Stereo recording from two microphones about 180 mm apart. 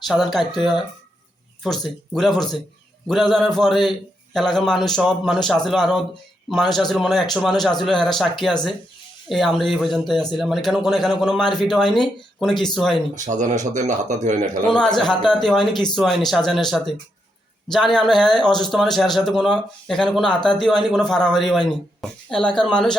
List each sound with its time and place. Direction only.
0.1 s speech: centre (ahead or behind)
13.1 s speech: 45° right (ahead or behind)
14.7 s speech: 5° left (ahead or behind)